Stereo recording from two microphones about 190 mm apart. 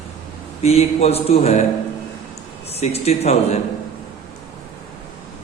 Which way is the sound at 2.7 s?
35° left (ahead or behind).